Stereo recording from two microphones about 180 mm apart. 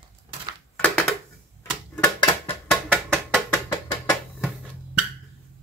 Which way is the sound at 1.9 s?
25° left (ahead or behind).